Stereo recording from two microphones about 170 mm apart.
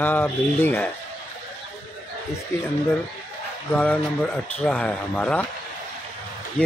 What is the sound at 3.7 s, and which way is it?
Speech, 10° left (ahead or behind).